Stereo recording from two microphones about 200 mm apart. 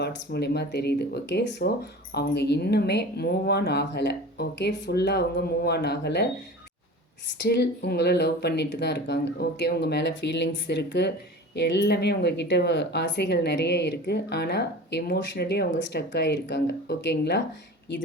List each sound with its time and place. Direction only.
0.0 s speech: 55° left (ahead or behind)
7.4 s speech: 55° left (ahead or behind)